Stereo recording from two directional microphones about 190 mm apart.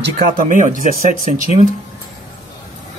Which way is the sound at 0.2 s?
45° right (ahead or behind).